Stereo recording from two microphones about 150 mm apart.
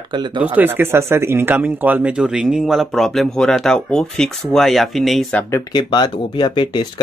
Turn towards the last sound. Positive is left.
turn(degrees=30)  # may be behind; listen again after turning